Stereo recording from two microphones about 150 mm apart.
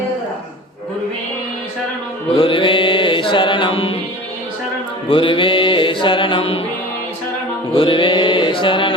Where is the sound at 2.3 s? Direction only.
35° left (ahead or behind).